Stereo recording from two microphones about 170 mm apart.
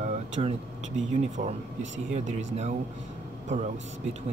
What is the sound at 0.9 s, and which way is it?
A man's voice, 45° right (ahead or behind).